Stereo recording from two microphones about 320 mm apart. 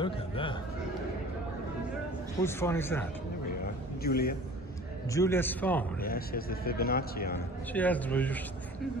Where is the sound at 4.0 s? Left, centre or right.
Left.